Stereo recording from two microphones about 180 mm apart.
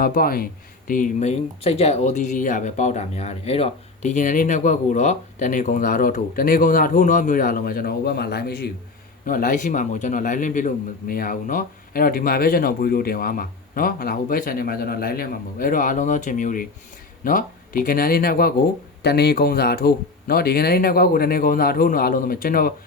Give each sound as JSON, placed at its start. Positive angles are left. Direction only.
{"t": 0.0, "sound": "speech", "side_deg": 55}
{"t": 9.2, "sound": "speech", "side_deg": 50}